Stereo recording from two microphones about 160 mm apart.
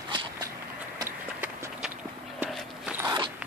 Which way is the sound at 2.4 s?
10° right (ahead or behind).